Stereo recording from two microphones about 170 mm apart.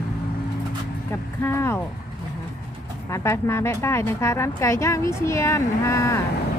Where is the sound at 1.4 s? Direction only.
15° left (ahead or behind).